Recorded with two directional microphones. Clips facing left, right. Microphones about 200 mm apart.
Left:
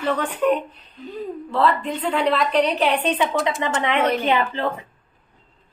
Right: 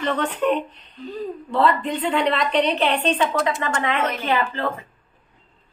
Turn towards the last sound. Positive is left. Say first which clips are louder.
# left 1 dB
turn(degrees=15)  # may be behind; listen again after turning